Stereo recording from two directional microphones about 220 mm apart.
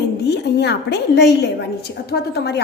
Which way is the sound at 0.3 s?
50° left (ahead or behind).